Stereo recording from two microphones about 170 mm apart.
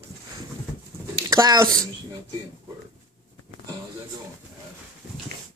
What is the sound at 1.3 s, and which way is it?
Speech, 20° right (ahead or behind).